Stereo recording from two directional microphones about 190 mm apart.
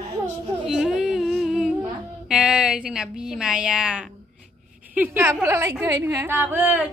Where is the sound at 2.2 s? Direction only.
5° right (ahead or behind).